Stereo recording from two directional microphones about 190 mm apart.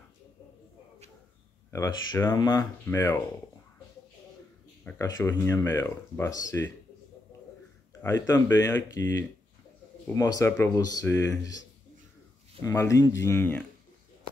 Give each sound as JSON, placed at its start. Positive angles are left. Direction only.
{"t": 1.7, "sound": "speech", "side_deg": 15}
{"t": 4.8, "sound": "speech", "side_deg": 15}
{"t": 8.0, "sound": "speech", "side_deg": 15}
{"t": 12.6, "sound": "speech", "side_deg": 15}